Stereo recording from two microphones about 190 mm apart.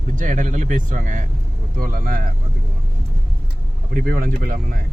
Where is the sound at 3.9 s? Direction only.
50° right (ahead or behind).